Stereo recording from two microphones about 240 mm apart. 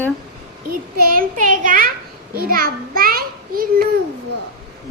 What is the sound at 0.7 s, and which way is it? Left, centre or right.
A child's voice, right.